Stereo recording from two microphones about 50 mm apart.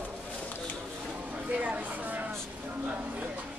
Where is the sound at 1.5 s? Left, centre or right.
Right.